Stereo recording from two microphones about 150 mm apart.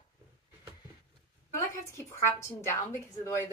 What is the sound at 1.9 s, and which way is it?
A woman's voice, 20° left (ahead or behind).